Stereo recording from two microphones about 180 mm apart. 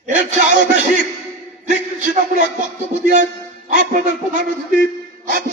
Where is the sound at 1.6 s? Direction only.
45° right (ahead or behind).